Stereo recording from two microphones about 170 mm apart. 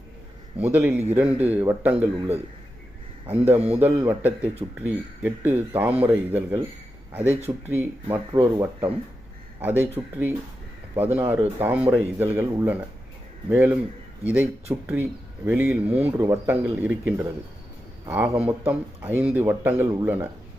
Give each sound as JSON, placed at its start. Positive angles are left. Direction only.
{"t": 0.6, "sound": "speech", "side_deg": -10}
{"t": 3.6, "sound": "a man's voice", "side_deg": -35}
{"t": 3.8, "sound": "speech", "side_deg": -15}